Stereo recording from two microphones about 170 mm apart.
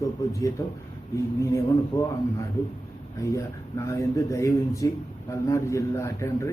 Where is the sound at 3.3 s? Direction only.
20° left (ahead or behind).